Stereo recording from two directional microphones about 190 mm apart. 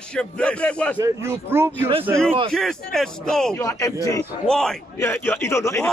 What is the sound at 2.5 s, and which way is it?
Speech, centre (ahead or behind).